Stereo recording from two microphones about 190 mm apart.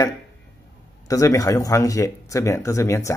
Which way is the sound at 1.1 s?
15° left (ahead or behind).